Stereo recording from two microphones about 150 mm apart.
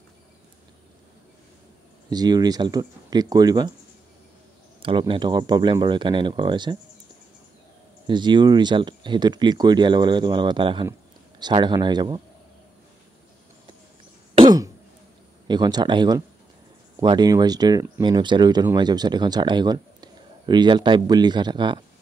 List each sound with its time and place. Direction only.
2.0 s speech: 25° right (ahead or behind)
4.8 s speech: 35° right (ahead or behind)
8.1 s speech: 30° right (ahead or behind)
14.3 s throat clearing: 30° right (ahead or behind)
15.4 s speech: 30° right (ahead or behind)